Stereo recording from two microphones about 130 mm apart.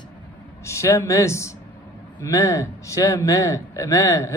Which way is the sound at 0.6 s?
20° left (ahead or behind).